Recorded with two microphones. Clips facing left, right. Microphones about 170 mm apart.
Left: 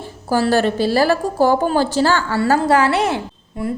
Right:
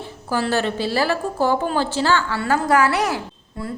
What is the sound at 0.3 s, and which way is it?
A woman's voice, 40° left (ahead or behind).